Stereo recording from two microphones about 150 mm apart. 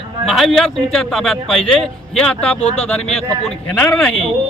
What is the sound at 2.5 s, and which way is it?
Speech, 45° left (ahead or behind).